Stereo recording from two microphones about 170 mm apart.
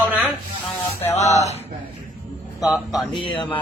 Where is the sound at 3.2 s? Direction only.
30° left (ahead or behind).